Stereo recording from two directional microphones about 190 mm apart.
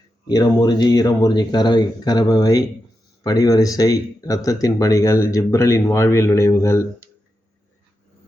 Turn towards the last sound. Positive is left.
turn(degrees=15)  # may be behind; listen again after turning